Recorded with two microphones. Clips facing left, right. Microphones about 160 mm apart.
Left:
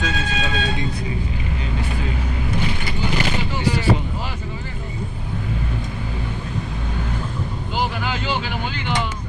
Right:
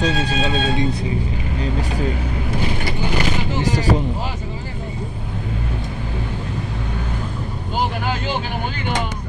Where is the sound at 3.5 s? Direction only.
40° right (ahead or behind).